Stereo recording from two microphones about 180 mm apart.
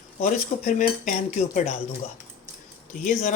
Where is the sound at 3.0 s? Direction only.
45° left (ahead or behind).